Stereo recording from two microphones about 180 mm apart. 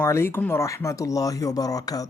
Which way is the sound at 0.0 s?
15° left (ahead or behind).